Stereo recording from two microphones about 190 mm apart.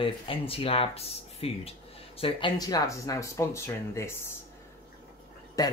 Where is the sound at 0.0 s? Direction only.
30° left (ahead or behind); by 4.3 s 15° left (ahead or behind).